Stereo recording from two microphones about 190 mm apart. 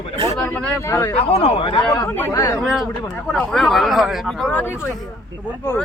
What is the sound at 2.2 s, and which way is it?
Speech, 15° left (ahead or behind).